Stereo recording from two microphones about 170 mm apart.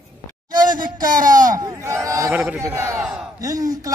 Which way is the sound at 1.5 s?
20° right (ahead or behind).